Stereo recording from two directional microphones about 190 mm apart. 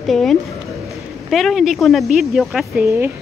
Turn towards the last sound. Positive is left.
turn(degrees=-10)  # may be behind; listen again after turning